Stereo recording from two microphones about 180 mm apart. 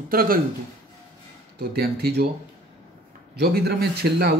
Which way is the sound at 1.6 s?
60° right (ahead or behind).